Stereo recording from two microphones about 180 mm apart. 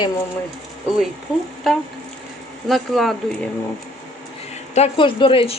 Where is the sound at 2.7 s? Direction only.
Centre (ahead or behind).